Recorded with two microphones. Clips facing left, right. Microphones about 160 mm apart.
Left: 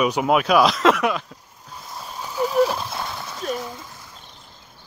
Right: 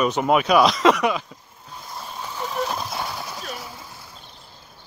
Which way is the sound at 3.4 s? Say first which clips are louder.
Left 13 dB; 45° left (ahead or behind).